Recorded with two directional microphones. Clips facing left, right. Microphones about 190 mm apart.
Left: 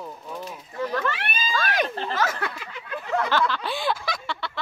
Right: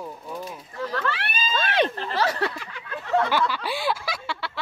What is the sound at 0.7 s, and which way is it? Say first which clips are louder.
Children playing: left 2 dB; 15° left (ahead or behind).